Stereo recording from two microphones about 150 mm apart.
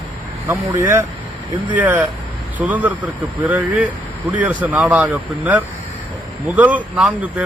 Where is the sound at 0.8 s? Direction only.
20° right (ahead or behind).